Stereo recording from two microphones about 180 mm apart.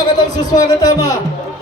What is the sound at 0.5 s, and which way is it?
Speech, 20° left (ahead or behind).